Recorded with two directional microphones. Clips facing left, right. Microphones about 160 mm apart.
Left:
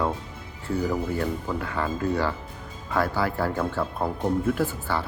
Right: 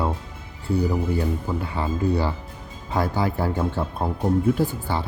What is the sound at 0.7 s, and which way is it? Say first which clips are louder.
Speech: right 2 dB; 15° right (ahead or behind).